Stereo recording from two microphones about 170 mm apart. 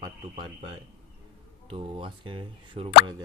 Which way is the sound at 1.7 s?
30° right (ahead or behind).